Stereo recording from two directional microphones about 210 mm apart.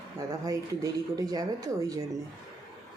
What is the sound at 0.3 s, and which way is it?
Speech, 15° right (ahead or behind).